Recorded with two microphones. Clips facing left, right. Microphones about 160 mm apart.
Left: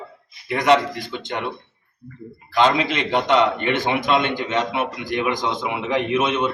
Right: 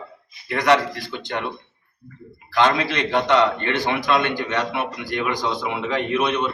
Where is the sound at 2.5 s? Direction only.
20° left (ahead or behind).